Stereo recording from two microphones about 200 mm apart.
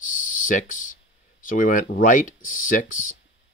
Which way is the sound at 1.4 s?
40° left (ahead or behind).